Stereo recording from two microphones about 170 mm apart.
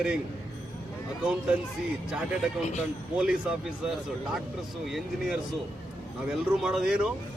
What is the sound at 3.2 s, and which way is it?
Speech, 5° right (ahead or behind).